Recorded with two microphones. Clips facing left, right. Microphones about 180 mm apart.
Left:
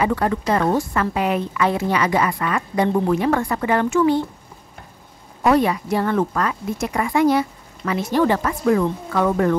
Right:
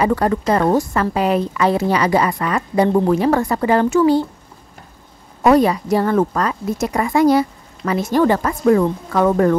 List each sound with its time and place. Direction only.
0.0 s a woman's voice: 40° right (ahead or behind)
5.4 s a woman's voice: 40° right (ahead or behind)